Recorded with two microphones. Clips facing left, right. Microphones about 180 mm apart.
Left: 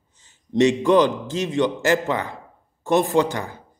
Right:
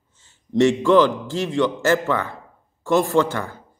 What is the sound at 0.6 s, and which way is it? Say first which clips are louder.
A man's voice: right 1 dB; 20° left (ahead or behind).